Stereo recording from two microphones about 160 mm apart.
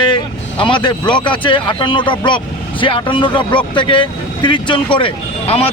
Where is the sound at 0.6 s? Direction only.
30° left (ahead or behind).